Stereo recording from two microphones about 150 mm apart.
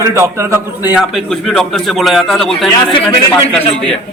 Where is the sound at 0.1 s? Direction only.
20° right (ahead or behind).